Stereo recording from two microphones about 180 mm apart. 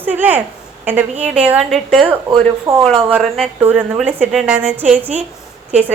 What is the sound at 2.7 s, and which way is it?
Speech, 15° right (ahead or behind).